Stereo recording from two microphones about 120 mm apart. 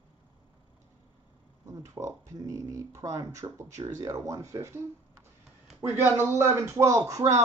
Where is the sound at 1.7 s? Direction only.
25° right (ahead or behind).